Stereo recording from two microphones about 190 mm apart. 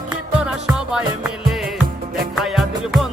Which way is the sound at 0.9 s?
5° right (ahead or behind).